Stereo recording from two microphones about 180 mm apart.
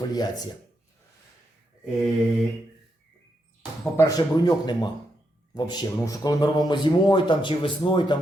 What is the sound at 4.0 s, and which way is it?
A man's voice, 20° left (ahead or behind).